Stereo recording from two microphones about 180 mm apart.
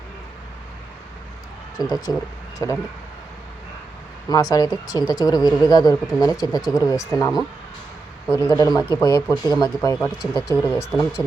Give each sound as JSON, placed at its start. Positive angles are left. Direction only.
{"t": 1.8, "sound": "speech", "side_deg": 20}
{"t": 4.3, "sound": "speech", "side_deg": 20}